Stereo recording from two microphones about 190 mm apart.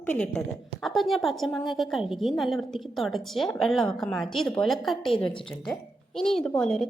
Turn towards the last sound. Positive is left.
turn(degrees=5)  # may be behind; listen again after turning